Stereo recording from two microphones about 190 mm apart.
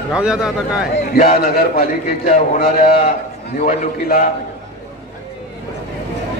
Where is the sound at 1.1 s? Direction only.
50° left (ahead or behind).